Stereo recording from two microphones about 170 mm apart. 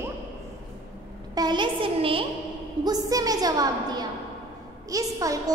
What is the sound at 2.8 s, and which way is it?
A woman's voice, 20° right (ahead or behind).